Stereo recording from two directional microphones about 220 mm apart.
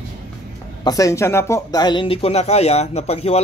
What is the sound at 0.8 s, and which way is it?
Speech, 15° left (ahead or behind).